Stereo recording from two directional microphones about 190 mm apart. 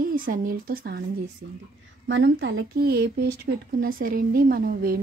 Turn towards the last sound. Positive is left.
turn(degrees=-50)  # may be behind; listen again after turning